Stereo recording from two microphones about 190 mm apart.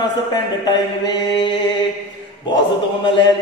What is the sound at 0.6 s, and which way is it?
Mantra, 25° left (ahead or behind).